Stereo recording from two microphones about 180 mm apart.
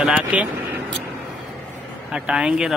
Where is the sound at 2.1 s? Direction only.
5° right (ahead or behind).